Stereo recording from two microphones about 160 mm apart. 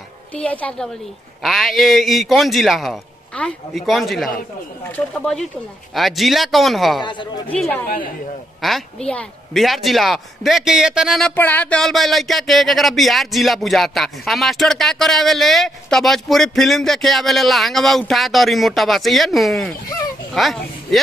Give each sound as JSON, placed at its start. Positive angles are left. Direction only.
{"t": 0.3, "sound": "speech", "side_deg": 10}
{"t": 7.0, "sound": "speech", "side_deg": 30}
{"t": 7.4, "sound": "speech", "side_deg": 10}
{"t": 11.3, "sound": "speech", "side_deg": 10}